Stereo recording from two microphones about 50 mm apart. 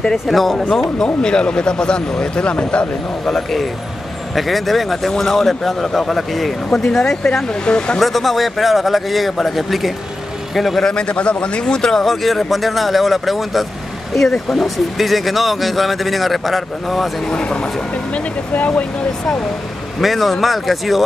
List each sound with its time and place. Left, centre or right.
0.3 s a man's voice: centre
0.9 s speech: centre
4.4 s a man's voice: centre
8.0 s a man's voice: centre
10.8 s a man's voice: centre
17.3 s speech: centre
18.1 s speech: left
20.0 s a man's voice: centre